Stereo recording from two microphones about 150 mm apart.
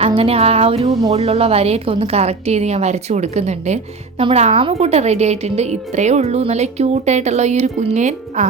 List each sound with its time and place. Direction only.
0.2 s music: 40° right (ahead or behind)
1.1 s a woman's voice: 45° right (ahead or behind)